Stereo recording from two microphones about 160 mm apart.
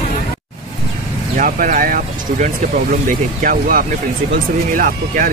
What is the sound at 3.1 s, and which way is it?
Speech, 60° right (ahead or behind).